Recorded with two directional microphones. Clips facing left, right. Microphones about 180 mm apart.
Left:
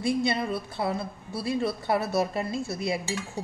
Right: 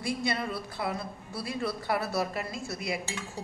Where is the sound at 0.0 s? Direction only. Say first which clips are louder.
Left 5 dB; 25° left (ahead or behind).